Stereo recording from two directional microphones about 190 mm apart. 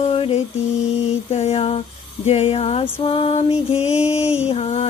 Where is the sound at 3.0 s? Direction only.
30° left (ahead or behind).